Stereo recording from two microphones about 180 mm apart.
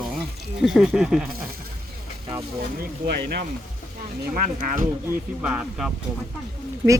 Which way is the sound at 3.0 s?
55° right (ahead or behind).